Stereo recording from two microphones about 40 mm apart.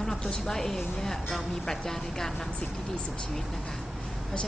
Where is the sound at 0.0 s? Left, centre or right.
Centre.